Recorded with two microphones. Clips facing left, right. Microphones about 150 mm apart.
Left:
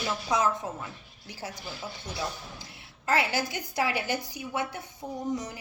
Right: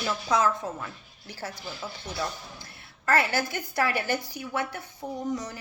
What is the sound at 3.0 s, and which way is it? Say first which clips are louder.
Speech: right 2 dB; 50° right (ahead or behind).